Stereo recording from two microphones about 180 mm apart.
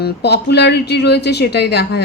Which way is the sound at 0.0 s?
70° left (ahead or behind).